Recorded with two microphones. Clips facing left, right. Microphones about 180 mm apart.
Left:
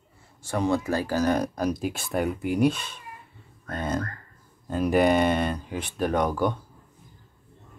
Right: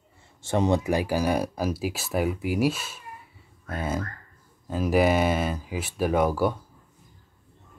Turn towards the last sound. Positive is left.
turn(degrees=-5)  # may be behind; listen again after turning